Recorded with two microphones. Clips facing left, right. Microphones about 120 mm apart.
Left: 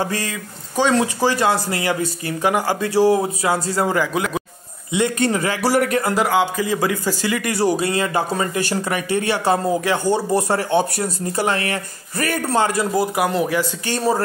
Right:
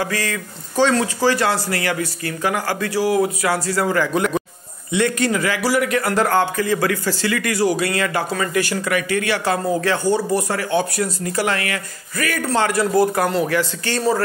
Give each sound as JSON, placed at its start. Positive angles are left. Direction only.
{"t": 0.0, "sound": "a man's voice", "side_deg": 20}
{"t": 4.0, "sound": "speech", "side_deg": 10}
{"t": 4.9, "sound": "a man's voice", "side_deg": 20}
{"t": 5.3, "sound": "a man's voice", "side_deg": 30}
{"t": 6.1, "sound": "a man's voice", "side_deg": 10}
{"t": 12.5, "sound": "speech", "side_deg": 15}